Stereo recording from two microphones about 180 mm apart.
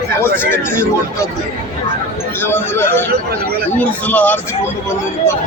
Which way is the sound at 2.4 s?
15° left (ahead or behind).